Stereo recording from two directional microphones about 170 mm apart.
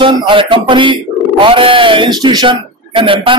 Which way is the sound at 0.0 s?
30° right (ahead or behind).